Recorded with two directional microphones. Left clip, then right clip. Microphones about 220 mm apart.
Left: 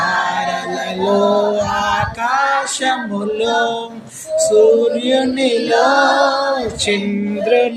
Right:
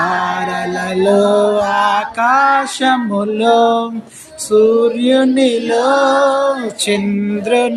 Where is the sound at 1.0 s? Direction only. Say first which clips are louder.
Right 3 dB; 40° right (ahead or behind).